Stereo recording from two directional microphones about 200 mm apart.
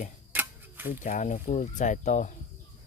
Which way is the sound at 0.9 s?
40° left (ahead or behind).